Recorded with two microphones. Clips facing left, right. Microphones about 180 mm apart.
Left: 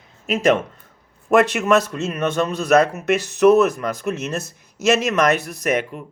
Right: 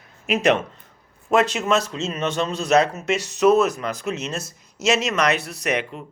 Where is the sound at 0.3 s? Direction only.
45° left (ahead or behind).